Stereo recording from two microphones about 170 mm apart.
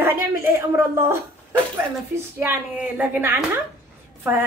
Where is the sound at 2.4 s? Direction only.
10° right (ahead or behind).